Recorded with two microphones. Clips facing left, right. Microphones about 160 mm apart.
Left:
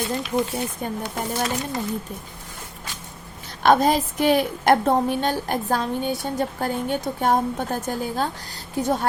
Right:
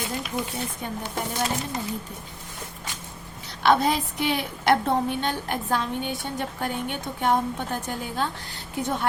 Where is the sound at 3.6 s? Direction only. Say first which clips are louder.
Left 4 dB; 45° left (ahead or behind).